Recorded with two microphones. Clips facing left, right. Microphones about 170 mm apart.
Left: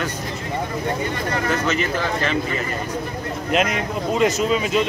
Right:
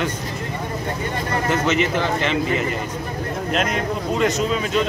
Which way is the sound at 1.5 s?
20° right (ahead or behind).